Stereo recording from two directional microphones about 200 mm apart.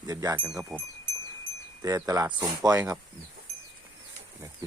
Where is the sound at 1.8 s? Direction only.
15° right (ahead or behind).